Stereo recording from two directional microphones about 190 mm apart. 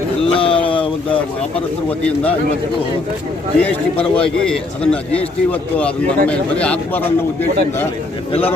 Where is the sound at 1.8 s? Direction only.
10° left (ahead or behind).